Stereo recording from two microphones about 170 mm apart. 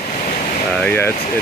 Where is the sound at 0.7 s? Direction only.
10° left (ahead or behind).